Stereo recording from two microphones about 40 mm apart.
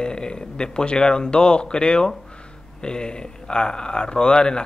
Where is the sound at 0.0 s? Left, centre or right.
Left.